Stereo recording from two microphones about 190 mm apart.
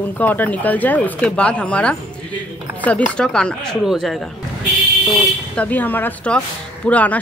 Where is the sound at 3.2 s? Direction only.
5° left (ahead or behind).